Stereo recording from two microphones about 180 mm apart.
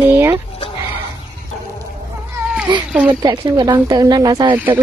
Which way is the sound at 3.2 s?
20° right (ahead or behind).